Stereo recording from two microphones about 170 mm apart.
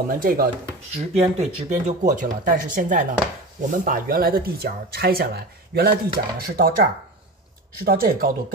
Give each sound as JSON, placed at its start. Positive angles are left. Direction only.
{"t": 0.1, "sound": "speech", "side_deg": -55}
{"t": 0.9, "sound": "speech", "side_deg": -40}